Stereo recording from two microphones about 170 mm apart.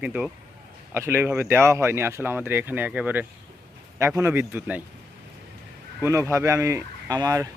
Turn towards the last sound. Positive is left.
turn(degrees=-20)  # may be behind; listen again after turning